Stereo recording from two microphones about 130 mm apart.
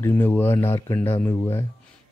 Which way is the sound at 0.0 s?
15° left (ahead or behind).